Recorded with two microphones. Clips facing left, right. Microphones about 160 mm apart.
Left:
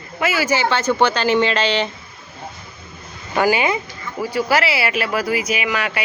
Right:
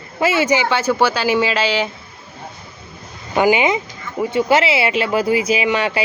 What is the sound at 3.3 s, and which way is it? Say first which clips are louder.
Speech: right 3 dB; 20° right (ahead or behind).